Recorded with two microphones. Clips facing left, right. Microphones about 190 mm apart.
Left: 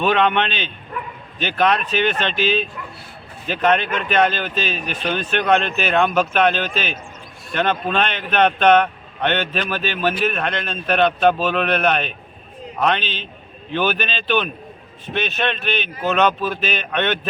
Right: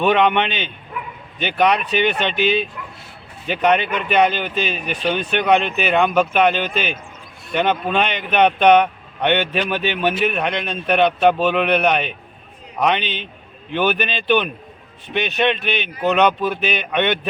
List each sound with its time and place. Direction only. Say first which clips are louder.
0.0 s speech: right 2 dB; 15° right (ahead or behind)